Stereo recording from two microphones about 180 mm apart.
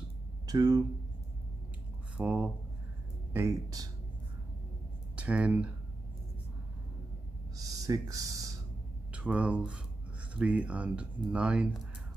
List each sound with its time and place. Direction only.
0.5 s speech: 20° right (ahead or behind)
2.1 s speech: 5° right (ahead or behind)
3.3 s speech: 20° right (ahead or behind)
5.1 s speech: 5° right (ahead or behind)
7.5 s speech: 20° right (ahead or behind)
9.1 s speech: 5° right (ahead or behind)